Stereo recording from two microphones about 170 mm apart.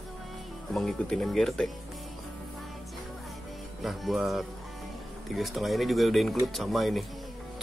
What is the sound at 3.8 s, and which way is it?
Speech, centre (ahead or behind).